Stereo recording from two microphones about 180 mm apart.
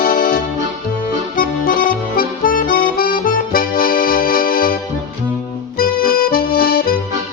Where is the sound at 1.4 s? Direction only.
50° left (ahead or behind).